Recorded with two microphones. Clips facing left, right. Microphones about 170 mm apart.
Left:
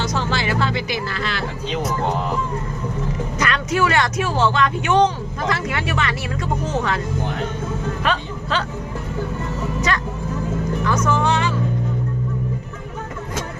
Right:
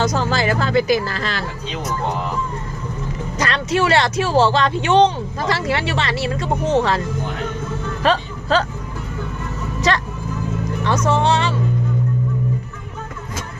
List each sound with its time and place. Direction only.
0.0 s speech: 40° right (ahead or behind)
3.3 s speech: 35° right (ahead or behind)
8.0 s speech: 35° right (ahead or behind)
9.9 s speech: 30° right (ahead or behind)